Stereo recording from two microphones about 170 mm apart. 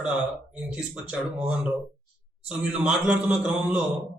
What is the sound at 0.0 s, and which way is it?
A man's voice, 5° right (ahead or behind).